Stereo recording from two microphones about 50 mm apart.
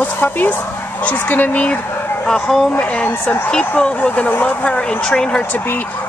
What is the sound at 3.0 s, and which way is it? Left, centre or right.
Speech, left.